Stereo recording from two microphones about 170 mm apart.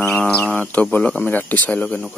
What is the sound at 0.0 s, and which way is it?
Mantra, 5° left (ahead or behind).